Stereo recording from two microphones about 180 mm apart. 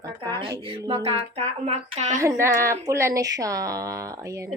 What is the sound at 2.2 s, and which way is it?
A woman's voice, 15° right (ahead or behind).